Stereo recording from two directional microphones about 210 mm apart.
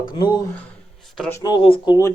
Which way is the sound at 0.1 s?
20° left (ahead or behind).